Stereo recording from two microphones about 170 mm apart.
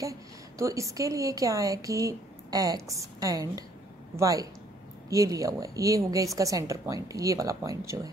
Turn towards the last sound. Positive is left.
turn(degrees=-20)  # may be behind; listen again after turning